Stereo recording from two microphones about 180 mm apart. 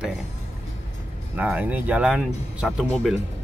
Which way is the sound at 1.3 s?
10° right (ahead or behind).